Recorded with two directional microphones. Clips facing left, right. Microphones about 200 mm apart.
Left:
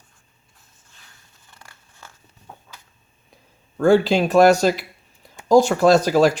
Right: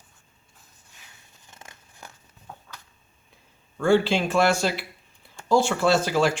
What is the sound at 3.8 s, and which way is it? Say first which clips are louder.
Speech: left 5 dB; 40° left (ahead or behind).